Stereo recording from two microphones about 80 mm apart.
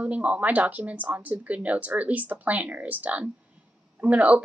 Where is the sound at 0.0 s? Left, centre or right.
Centre.